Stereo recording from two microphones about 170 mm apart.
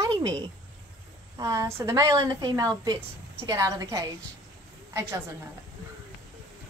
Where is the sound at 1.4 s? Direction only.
15° right (ahead or behind).